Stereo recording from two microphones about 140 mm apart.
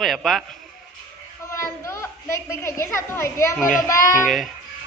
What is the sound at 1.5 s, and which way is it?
A child's voice, 20° left (ahead or behind).